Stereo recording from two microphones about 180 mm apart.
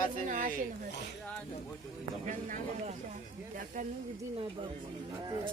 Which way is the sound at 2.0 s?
45° right (ahead or behind).